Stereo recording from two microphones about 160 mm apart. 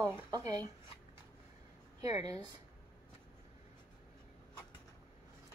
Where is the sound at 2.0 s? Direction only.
25° right (ahead or behind).